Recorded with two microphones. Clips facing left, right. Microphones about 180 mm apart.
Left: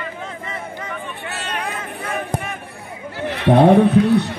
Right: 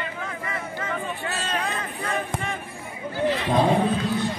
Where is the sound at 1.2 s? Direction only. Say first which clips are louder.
Even; 65° left (ahead or behind).